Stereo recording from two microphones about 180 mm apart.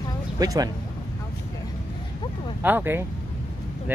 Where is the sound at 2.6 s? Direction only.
10° right (ahead or behind).